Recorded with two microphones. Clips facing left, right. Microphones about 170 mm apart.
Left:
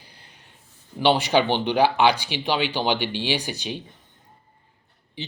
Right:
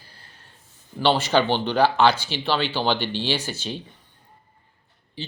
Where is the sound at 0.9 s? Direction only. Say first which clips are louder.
Left 1 dB; 15° left (ahead or behind).